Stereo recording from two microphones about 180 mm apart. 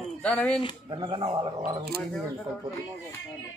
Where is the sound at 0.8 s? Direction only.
25° right (ahead or behind).